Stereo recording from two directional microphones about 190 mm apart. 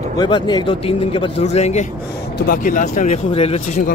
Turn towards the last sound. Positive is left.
turn(degrees=30)  # may be behind; listen again after turning